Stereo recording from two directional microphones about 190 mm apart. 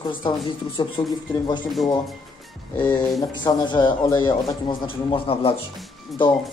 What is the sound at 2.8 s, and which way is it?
Speech, 20° left (ahead or behind).